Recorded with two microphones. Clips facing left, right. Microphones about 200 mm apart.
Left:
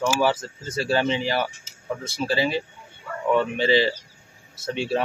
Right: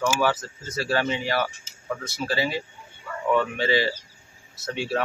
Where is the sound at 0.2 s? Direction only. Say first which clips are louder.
Left 2 dB; 30° left (ahead or behind).